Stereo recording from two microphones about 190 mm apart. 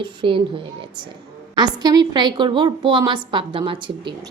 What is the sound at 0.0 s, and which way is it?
A woman's voice, 25° right (ahead or behind).